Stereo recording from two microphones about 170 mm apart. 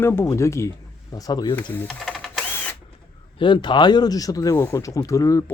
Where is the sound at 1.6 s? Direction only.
10° left (ahead or behind).